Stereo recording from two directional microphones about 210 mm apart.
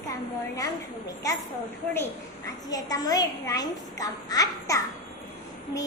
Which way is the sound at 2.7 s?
15° left (ahead or behind).